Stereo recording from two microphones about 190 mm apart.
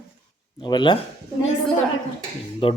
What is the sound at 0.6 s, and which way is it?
Speech, 25° left (ahead or behind).